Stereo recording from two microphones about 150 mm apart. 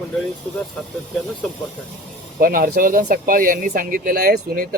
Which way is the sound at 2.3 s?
75° right (ahead or behind).